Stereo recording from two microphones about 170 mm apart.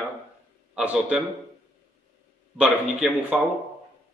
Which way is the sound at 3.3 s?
Centre (ahead or behind).